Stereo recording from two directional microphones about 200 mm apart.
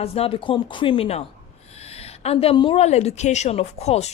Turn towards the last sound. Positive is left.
turn(degrees=30)  # may be behind; listen again after turning